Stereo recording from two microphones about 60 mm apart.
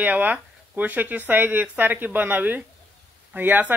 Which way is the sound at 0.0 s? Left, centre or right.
Right.